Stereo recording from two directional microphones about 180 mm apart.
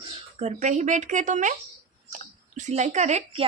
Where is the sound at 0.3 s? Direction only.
40° right (ahead or behind).